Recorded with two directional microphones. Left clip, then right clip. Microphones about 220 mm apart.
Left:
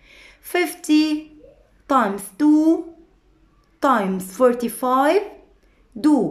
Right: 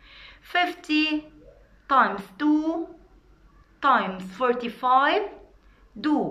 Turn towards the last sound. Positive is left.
turn(degrees=55)  # may be behind; listen again after turning